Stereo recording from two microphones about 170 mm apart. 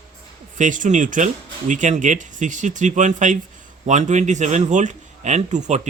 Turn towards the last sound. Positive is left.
turn(degrees=-45)  # may be behind; listen again after turning